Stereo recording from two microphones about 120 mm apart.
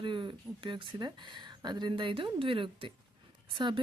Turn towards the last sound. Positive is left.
turn(degrees=-40)  # may be behind; listen again after turning